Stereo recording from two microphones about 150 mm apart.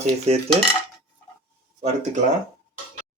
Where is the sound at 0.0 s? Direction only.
45° right (ahead or behind).